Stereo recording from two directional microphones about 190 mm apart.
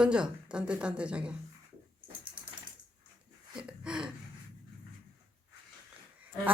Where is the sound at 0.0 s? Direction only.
5° right (ahead or behind).